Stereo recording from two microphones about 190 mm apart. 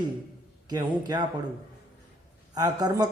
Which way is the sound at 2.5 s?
20° right (ahead or behind).